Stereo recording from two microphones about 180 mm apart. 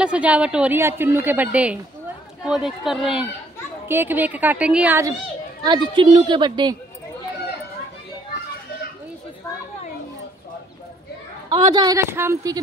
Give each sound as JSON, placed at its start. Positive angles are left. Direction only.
{"t": 0.0, "sound": "a woman's voice", "side_deg": -5}
{"t": 5.6, "sound": "speech", "side_deg": -25}
{"t": 11.4, "sound": "speech", "side_deg": -20}